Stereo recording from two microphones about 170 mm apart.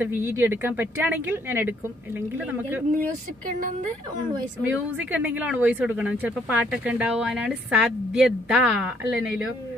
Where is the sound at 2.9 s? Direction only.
55° right (ahead or behind).